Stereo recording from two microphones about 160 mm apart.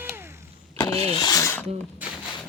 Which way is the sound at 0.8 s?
25° left (ahead or behind).